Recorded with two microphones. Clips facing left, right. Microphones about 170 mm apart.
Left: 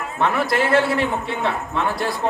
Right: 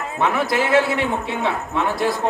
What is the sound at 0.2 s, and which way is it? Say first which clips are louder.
A man's voice: even; centre (ahead or behind).